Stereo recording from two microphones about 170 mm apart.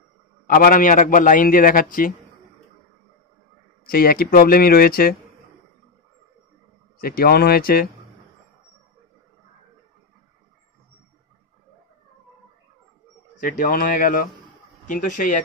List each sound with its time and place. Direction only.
0.5 s a man's voice: 55° left (ahead or behind)
3.8 s speech: 60° left (ahead or behind)
7.0 s speech: 65° left (ahead or behind)
13.4 s a man's voice: 50° left (ahead or behind)